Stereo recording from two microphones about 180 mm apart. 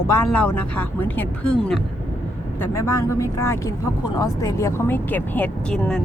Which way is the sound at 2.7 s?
15° left (ahead or behind).